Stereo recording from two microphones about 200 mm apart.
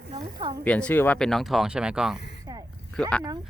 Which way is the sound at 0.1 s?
25° right (ahead or behind).